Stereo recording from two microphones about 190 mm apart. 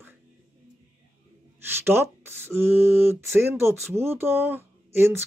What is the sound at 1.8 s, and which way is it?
Speech, 10° right (ahead or behind).